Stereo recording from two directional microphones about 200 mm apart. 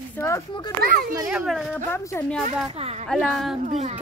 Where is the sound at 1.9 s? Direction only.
10° left (ahead or behind).